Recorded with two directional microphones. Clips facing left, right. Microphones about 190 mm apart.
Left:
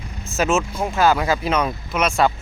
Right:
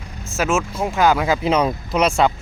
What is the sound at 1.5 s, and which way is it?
Speech, 30° right (ahead or behind).